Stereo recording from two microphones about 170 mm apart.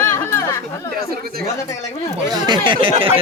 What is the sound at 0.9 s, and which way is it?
Speech, 65° right (ahead or behind).